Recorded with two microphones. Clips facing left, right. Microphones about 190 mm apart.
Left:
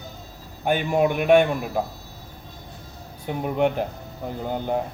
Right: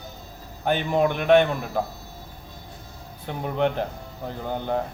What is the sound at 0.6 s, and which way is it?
Speech, 10° left (ahead or behind).